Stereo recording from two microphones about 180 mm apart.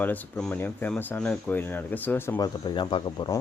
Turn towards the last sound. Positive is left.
turn(degrees=25)  # may be behind; listen again after turning